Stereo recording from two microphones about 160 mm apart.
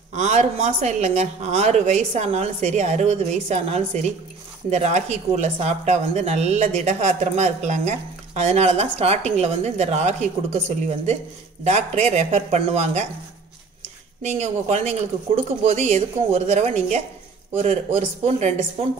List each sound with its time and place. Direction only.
0.1 s speech: 45° right (ahead or behind)
14.2 s speech: 45° right (ahead or behind)